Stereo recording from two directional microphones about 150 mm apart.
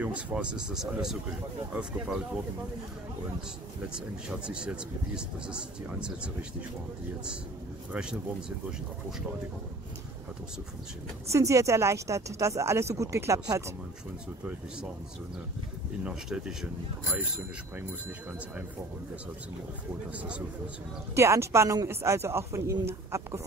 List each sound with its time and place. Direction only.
0.0 s speech: 5° right (ahead or behind)
4.5 s speech: 5° right (ahead or behind)
7.9 s speech: 5° right (ahead or behind)
11.3 s speech: 20° right (ahead or behind)
16.0 s speech: 5° right (ahead or behind)
20.2 s speech: 10° right (ahead or behind)
21.1 s speech: 20° right (ahead or behind)